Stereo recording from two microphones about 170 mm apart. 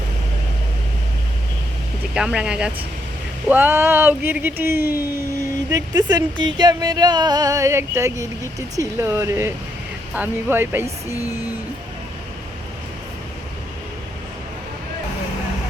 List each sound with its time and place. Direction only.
2.1 s speech: 5° right (ahead or behind)
5.7 s speech: 25° right (ahead or behind)